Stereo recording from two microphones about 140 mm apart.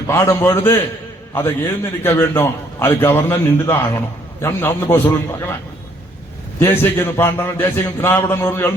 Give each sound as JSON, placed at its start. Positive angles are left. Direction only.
{"t": 0.1, "sound": "a man's voice", "side_deg": 20}
{"t": 6.6, "sound": "a man's voice", "side_deg": 15}